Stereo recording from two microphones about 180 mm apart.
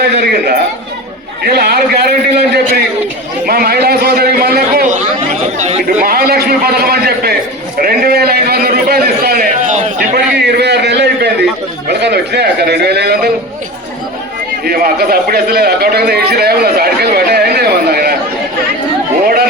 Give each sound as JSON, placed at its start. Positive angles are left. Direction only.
{"t": 0.0, "sound": "a man's voice", "side_deg": -60}
{"t": 5.5, "sound": "a man's voice", "side_deg": -35}
{"t": 6.0, "sound": "a man's voice", "side_deg": -55}
{"t": 9.6, "sound": "a sound", "side_deg": -40}
{"t": 10.2, "sound": "a man's voice", "side_deg": -65}
{"t": 14.6, "sound": "a man's voice", "side_deg": -55}